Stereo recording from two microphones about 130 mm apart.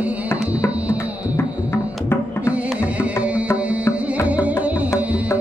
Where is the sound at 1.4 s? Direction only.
20° left (ahead or behind).